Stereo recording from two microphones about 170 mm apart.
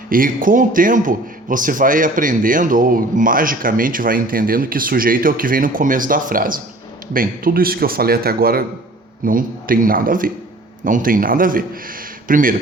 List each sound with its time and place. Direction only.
0.1 s a man's voice: 55° right (ahead or behind)